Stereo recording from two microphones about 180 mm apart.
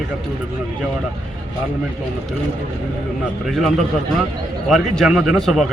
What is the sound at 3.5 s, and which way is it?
Speech, centre (ahead or behind).